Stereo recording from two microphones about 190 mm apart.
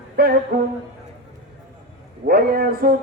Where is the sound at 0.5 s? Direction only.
55° right (ahead or behind).